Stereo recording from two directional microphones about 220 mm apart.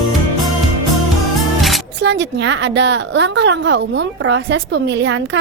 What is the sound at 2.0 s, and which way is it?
A woman's voice, 50° right (ahead or behind).